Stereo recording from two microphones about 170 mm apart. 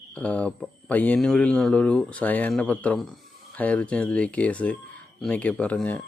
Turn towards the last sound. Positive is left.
turn(degrees=5)  # may be behind; listen again after turning